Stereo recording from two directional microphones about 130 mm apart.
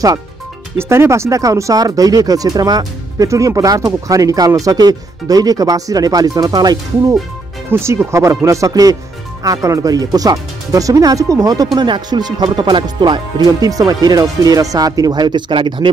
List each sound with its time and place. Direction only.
0.7 s speech: 20° right (ahead or behind)
7.7 s speech: 20° right (ahead or behind); by 15.9 s 40° right (ahead or behind)